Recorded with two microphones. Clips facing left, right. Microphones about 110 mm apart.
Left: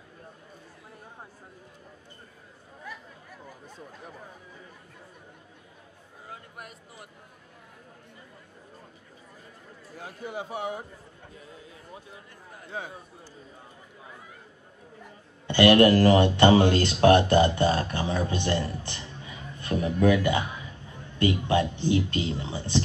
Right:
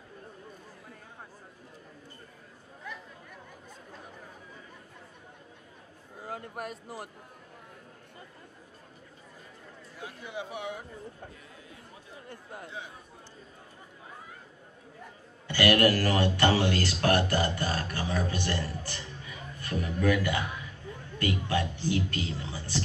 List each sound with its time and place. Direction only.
6.2 s speech: 40° right (ahead or behind)
9.9 s a man's voice: 45° left (ahead or behind)
12.7 s a man's voice: 50° left (ahead or behind)
15.4 s a woman's voice: 25° left (ahead or behind)